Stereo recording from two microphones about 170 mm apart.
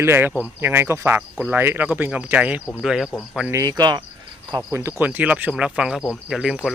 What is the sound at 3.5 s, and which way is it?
Cricket, 20° right (ahead or behind).